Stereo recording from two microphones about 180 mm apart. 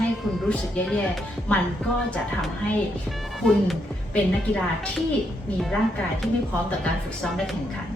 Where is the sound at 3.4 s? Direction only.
Centre (ahead or behind).